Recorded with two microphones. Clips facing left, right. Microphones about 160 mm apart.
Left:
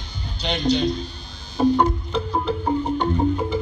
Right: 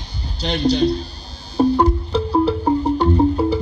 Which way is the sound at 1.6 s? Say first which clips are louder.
Right 3 dB; 35° right (ahead or behind).